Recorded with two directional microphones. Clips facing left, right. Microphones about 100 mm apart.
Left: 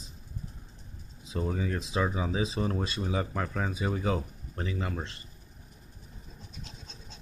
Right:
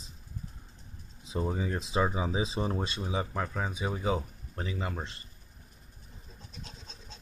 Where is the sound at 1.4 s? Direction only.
20° right (ahead or behind).